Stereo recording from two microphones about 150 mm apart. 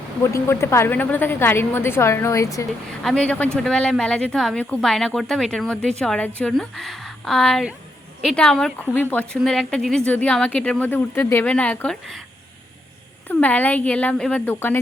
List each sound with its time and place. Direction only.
0.2 s a woman's voice: 15° left (ahead or behind)
3.0 s a woman's voice: 5° left (ahead or behind)
13.2 s a woman's voice: 10° left (ahead or behind)